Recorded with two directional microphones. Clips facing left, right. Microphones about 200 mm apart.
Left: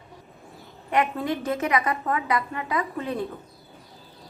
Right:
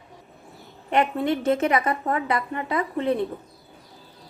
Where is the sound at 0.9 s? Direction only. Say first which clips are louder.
Right 2 dB; 25° right (ahead or behind).